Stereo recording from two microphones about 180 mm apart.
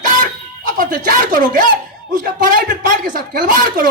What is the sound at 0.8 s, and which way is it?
Speech, 50° right (ahead or behind).